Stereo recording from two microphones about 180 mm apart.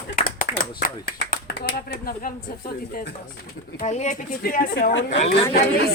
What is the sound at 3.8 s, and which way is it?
Speech, 40° left (ahead or behind).